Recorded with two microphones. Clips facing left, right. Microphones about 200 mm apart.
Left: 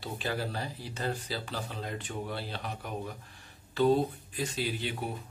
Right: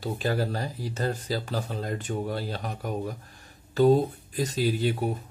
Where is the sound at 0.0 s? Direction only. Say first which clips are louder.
Right 7 dB; 40° right (ahead or behind).